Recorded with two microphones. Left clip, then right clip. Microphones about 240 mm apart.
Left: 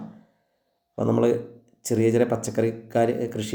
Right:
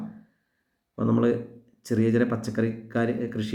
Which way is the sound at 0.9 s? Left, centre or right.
Centre.